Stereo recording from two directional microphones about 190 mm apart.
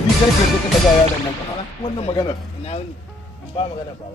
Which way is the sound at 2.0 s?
25° left (ahead or behind).